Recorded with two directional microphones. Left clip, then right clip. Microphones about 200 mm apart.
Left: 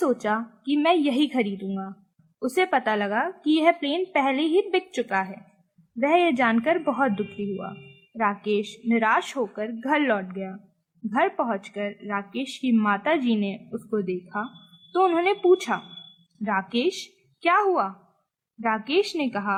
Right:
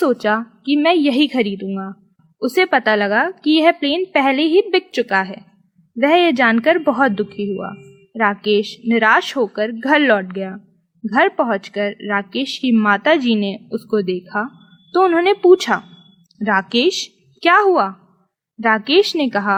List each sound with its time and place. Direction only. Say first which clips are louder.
0.0 s a woman's voice: right 8 dB; 25° right (ahead or behind)